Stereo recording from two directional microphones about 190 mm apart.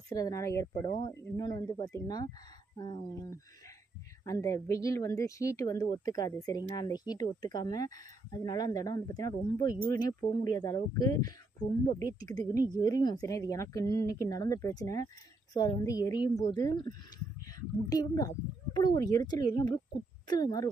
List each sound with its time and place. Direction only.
0.1 s speech: 20° left (ahead or behind)